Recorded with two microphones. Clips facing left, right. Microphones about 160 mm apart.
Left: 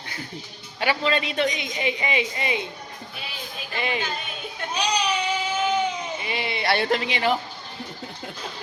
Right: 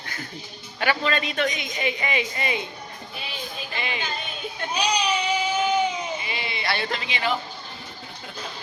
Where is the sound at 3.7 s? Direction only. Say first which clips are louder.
Left 5 dB; 45° left (ahead or behind).